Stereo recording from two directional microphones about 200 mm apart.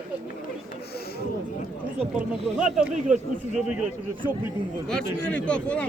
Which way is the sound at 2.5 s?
5° right (ahead or behind).